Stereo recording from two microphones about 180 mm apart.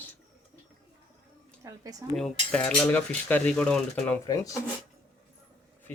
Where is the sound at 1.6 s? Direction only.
20° right (ahead or behind).